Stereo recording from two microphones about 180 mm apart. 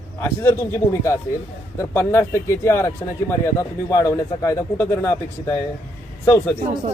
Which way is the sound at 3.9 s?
15° left (ahead or behind).